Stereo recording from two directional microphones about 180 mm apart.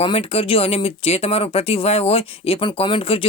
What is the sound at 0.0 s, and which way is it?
Speech, 30° left (ahead or behind).